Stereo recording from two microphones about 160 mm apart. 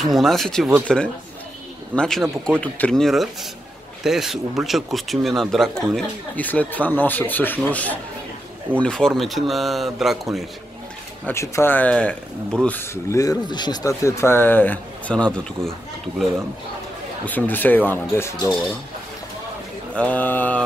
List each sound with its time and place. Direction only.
0.0 s speech: centre (ahead or behind)
11.2 s speech: 15° left (ahead or behind)
17.2 s speech: 10° left (ahead or behind)
20.0 s speech: 10° left (ahead or behind)